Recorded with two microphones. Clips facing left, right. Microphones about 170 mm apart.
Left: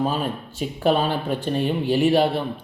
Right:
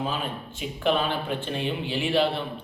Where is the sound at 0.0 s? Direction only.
40° left (ahead or behind).